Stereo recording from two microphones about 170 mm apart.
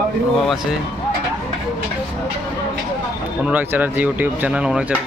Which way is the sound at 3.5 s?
10° right (ahead or behind).